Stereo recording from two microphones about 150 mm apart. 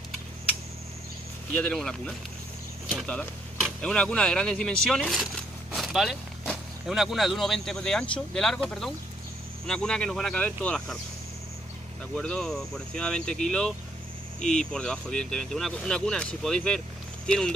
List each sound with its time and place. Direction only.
1.6 s speech: 5° left (ahead or behind)
12.2 s speech: 5° left (ahead or behind)